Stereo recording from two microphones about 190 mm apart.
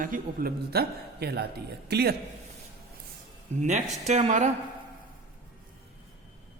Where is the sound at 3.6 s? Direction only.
40° right (ahead or behind).